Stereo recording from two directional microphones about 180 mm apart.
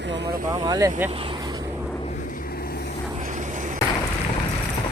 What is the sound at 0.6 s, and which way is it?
Speech, 20° right (ahead or behind).